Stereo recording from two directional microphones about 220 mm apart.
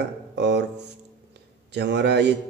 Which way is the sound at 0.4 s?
50° right (ahead or behind).